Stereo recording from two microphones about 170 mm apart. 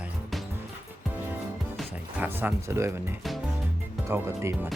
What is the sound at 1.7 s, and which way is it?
Music, centre (ahead or behind).